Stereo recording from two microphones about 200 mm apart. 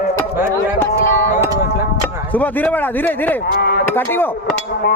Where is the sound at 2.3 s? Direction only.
10° left (ahead or behind).